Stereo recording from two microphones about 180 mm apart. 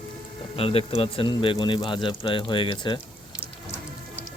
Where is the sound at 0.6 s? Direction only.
30° left (ahead or behind).